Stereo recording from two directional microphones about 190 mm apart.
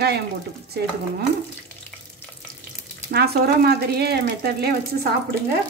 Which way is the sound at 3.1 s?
55° right (ahead or behind).